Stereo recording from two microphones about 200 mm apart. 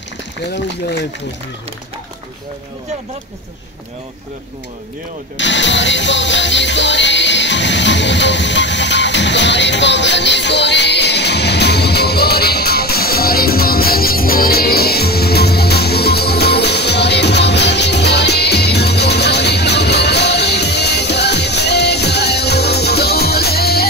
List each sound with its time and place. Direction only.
5.4 s music: 65° left (ahead or behind)